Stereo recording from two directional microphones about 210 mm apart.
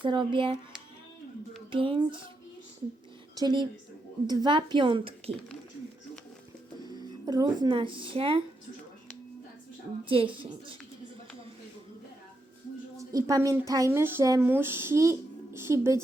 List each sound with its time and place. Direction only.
0.0 s speech: 25° right (ahead or behind)
1.7 s speech: 25° right (ahead or behind)
3.3 s speech: 20° right (ahead or behind)
6.8 s speech: 20° right (ahead or behind)
10.1 s speech: 25° right (ahead or behind)
13.0 s speech: 15° right (ahead or behind)